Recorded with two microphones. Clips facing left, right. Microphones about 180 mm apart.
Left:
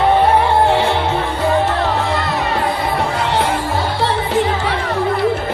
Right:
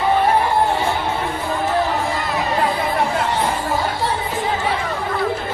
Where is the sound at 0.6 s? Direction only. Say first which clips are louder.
Left 5 dB; 75° left (ahead or behind).